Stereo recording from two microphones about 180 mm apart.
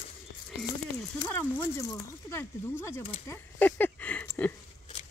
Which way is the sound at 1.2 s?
10° left (ahead or behind).